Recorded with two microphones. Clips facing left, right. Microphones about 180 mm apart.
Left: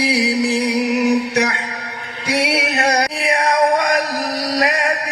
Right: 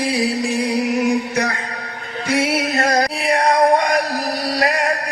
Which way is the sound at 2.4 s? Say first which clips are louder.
Left 1 dB; 75° left (ahead or behind).